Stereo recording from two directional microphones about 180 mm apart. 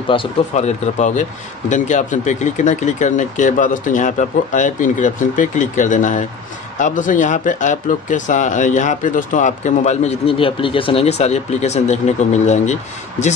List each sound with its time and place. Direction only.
0.1 s speech: 35° left (ahead or behind)